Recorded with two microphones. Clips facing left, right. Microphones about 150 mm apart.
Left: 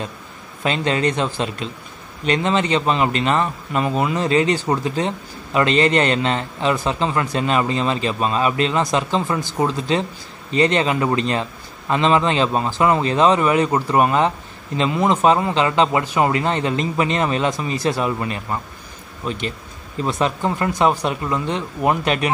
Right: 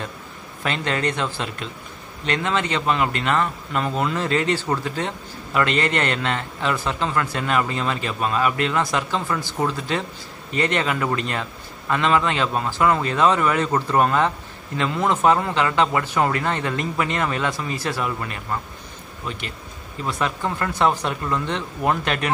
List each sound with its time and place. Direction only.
0.7 s speech: 20° left (ahead or behind)
20.1 s speech: 20° left (ahead or behind)